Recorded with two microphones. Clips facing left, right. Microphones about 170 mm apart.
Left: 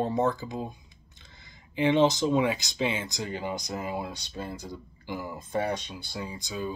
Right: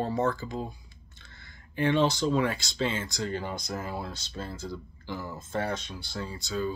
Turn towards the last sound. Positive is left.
turn(degrees=15)  # may be behind; listen again after turning